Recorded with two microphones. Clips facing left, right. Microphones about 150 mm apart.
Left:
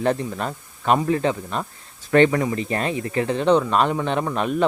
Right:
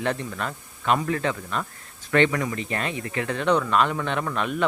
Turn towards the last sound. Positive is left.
turn(degrees=35)  # may be behind; listen again after turning